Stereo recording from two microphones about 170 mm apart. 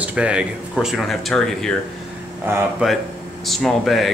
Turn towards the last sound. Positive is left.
turn(degrees=0)  # may be behind; listen again after turning